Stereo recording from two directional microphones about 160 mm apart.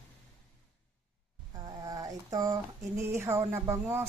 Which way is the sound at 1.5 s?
25° right (ahead or behind).